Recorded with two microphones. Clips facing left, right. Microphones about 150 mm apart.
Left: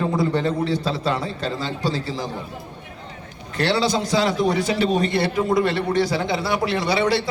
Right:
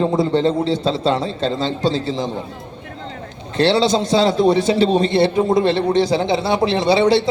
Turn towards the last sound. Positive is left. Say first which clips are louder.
# right 6 dB
turn(degrees=-25)  # may be behind; listen again after turning